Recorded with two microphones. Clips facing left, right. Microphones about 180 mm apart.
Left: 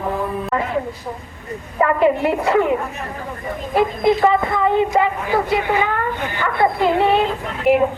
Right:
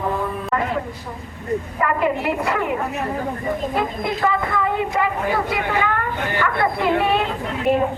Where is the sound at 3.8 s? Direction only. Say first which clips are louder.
Left 7 dB; 25° left (ahead or behind).